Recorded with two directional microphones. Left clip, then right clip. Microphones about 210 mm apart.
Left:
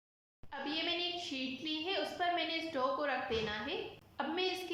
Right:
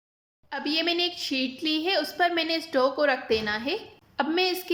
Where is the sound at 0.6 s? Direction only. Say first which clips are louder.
Right 11 dB; 45° right (ahead or behind).